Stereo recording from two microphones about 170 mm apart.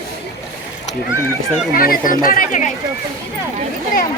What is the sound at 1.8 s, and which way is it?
Speech, 55° left (ahead or behind).